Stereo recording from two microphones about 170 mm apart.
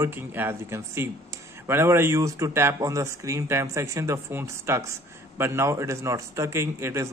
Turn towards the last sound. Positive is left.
turn(degrees=-15)  # may be behind; listen again after turning